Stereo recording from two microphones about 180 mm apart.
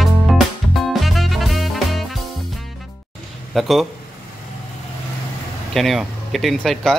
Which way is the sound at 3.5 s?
Centre (ahead or behind).